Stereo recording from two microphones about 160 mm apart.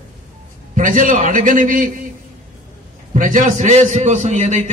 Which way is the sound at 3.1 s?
55° right (ahead or behind).